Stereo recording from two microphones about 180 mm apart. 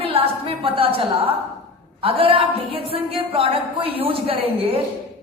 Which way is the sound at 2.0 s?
30° right (ahead or behind).